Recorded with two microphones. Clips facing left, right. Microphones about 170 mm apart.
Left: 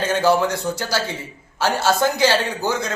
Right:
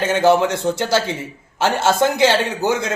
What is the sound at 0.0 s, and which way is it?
A man's voice, 20° right (ahead or behind).